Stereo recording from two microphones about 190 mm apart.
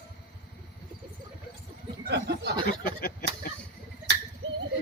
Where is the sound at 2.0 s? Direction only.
60° right (ahead or behind).